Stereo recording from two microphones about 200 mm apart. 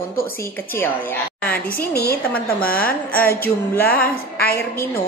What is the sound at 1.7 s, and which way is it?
A woman's voice, 50° left (ahead or behind).